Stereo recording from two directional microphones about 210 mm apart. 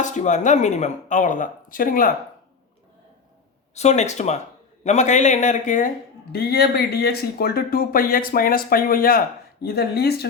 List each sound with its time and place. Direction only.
0.0 s speech: 35° left (ahead or behind)
3.8 s speech: 35° left (ahead or behind); by 10.2 s 50° left (ahead or behind)